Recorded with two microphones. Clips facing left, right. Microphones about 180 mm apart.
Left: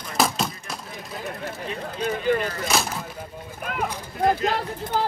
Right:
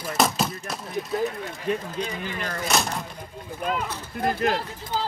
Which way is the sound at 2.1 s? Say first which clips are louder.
Left 10 dB; 55° left (ahead or behind).